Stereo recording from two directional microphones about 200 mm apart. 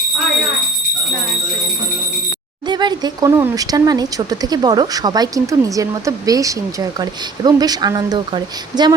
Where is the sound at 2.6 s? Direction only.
20° right (ahead or behind).